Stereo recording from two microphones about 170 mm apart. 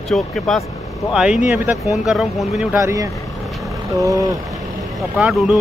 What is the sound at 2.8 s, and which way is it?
Speech, 20° right (ahead or behind).